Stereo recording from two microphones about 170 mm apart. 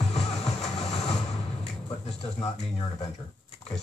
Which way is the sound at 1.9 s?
35° left (ahead or behind).